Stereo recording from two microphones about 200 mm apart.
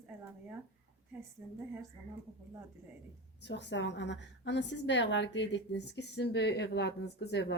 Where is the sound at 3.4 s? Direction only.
60° left (ahead or behind).